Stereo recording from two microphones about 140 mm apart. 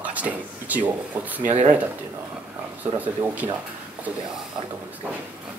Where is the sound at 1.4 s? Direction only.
55° right (ahead or behind).